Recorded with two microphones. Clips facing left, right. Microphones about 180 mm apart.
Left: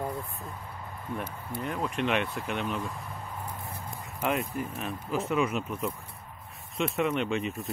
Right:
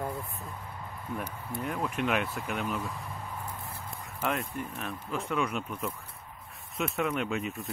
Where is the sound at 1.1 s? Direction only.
5° right (ahead or behind).